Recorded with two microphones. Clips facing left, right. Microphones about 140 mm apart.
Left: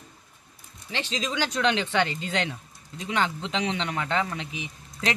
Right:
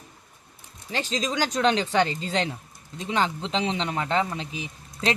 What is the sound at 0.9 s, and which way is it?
Speech, 40° right (ahead or behind).